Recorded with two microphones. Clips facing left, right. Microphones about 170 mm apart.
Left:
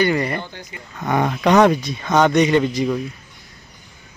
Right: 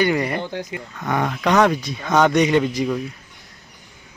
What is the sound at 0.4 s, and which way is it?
Speech, 90° right.